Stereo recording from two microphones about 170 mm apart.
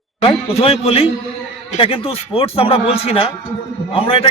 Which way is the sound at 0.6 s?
35° left (ahead or behind).